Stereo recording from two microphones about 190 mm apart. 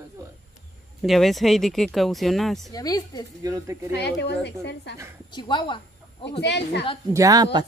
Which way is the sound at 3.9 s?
65° left (ahead or behind).